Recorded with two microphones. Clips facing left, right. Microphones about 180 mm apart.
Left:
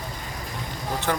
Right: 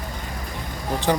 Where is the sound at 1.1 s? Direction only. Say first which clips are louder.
Right 5 dB; 15° right (ahead or behind).